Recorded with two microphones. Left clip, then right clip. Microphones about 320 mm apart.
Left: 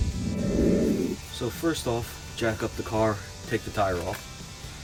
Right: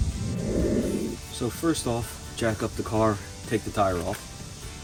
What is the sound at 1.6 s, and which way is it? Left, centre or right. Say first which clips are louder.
Speech: right 1 dB; centre.